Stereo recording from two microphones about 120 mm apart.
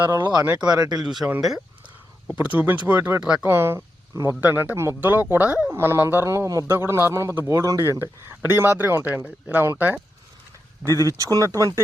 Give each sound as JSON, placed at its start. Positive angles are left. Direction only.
{"t": 0.3, "sound": "speech", "side_deg": -15}
{"t": 0.6, "sound": "speech", "side_deg": -35}
{"t": 0.9, "sound": "speech", "side_deg": -5}
{"t": 11.2, "sound": "speech", "side_deg": -30}